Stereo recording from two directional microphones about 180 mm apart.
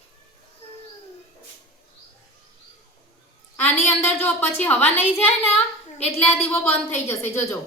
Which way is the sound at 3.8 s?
10° left (ahead or behind).